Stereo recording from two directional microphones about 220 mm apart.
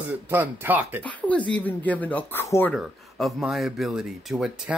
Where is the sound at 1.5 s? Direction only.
5° left (ahead or behind).